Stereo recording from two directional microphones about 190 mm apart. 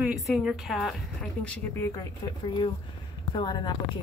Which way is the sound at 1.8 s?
20° left (ahead or behind).